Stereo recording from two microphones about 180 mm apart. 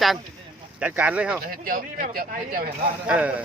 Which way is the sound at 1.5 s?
55° right (ahead or behind).